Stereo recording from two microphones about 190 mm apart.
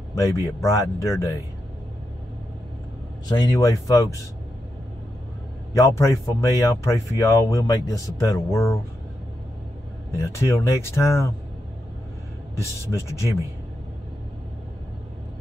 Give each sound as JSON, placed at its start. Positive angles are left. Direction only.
{"t": 0.1, "sound": "speech", "side_deg": 15}
{"t": 3.3, "sound": "speech", "side_deg": 20}
{"t": 5.7, "sound": "speech", "side_deg": 20}
{"t": 10.1, "sound": "speech", "side_deg": 15}
{"t": 12.9, "sound": "speech", "side_deg": 15}